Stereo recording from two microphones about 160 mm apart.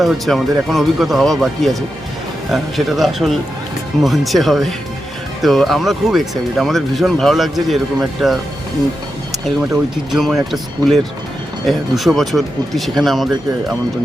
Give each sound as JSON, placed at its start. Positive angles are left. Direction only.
{"t": 0.0, "sound": "speech", "side_deg": 0}
{"t": 10.1, "sound": "speech", "side_deg": 0}